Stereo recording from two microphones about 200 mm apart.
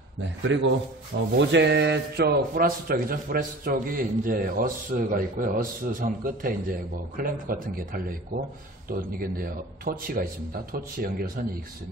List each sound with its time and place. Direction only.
0.4 s a man's voice: 65° right (ahead or behind); by 11.2 s 45° right (ahead or behind)